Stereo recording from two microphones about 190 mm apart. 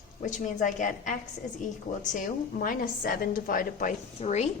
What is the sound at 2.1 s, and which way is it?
A woman's voice, 45° left (ahead or behind).